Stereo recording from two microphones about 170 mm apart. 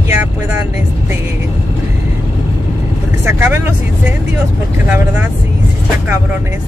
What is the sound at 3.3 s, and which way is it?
Speech, 15° right (ahead or behind).